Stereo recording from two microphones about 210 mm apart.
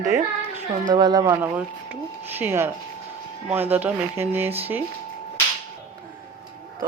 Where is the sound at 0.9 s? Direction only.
20° right (ahead or behind).